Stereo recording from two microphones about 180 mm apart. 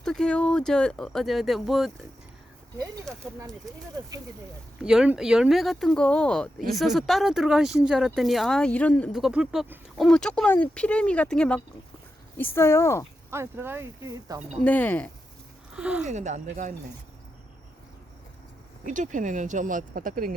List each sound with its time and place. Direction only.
0.0 s speech: 5° left (ahead or behind)
4.8 s speech: 5° right (ahead or behind); by 13.1 s 15° left (ahead or behind)
13.3 s speech: 15° right (ahead or behind)
14.6 s speech: 10° left (ahead or behind)
15.7 s speech: 5° right (ahead or behind)
16.0 s speech: 40° right (ahead or behind)
18.9 s speech: 45° right (ahead or behind)